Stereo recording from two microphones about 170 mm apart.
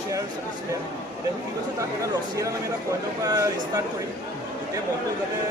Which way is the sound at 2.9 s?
20° right (ahead or behind).